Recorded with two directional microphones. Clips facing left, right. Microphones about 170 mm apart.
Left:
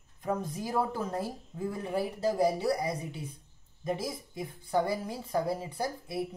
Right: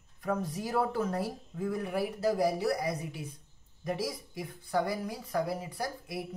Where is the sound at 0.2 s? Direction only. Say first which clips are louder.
Even; 25° left (ahead or behind).